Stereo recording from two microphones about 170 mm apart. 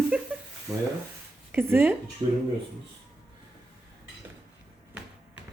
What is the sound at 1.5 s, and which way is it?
Speech, 15° right (ahead or behind).